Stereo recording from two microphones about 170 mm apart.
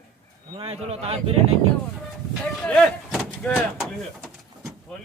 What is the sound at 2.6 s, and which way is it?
Vehicle, centre (ahead or behind).